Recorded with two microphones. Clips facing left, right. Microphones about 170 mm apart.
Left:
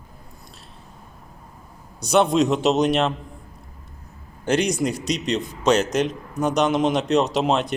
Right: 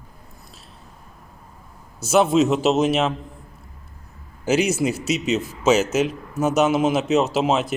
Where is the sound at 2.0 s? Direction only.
5° right (ahead or behind).